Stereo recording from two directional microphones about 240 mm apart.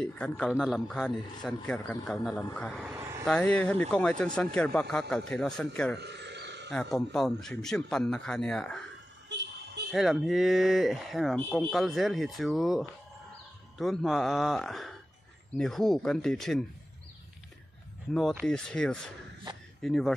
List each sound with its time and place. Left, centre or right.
0.0 s a man's voice: centre
3.0 s vehicle: centre
3.3 s a man's voice: centre
5.9 s a sound: right
7.1 s a man's voice: centre
9.3 s vehicle: right
9.8 s a man's voice: centre
18.1 s a man's voice: centre